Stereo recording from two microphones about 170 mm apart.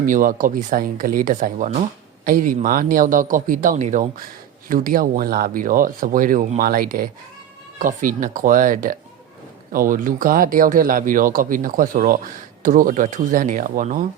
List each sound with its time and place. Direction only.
0.0 s speech: 55° right (ahead or behind)
4.7 s speech: 55° right (ahead or behind)